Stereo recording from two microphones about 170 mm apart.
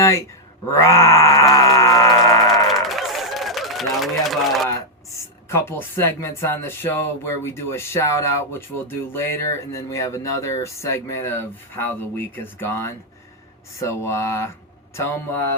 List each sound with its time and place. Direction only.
0.0 s speech: 20° left (ahead or behind)
0.7 s music: 15° left (ahead or behind)
2.6 s a sound: centre (ahead or behind)
5.1 s speech: 15° left (ahead or behind)